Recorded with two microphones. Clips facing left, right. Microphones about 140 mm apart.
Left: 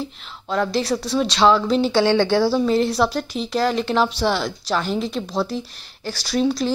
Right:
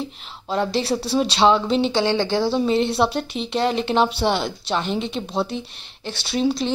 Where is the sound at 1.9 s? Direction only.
15° right (ahead or behind).